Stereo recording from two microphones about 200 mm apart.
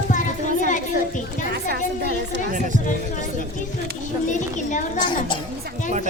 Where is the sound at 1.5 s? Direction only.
55° right (ahead or behind).